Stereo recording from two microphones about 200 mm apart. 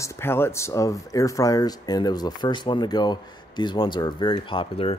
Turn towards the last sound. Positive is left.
turn(degrees=25)  # may be behind; listen again after turning